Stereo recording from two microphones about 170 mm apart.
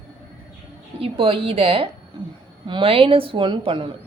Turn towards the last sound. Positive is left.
turn(degrees=-30)  # may be behind; listen again after turning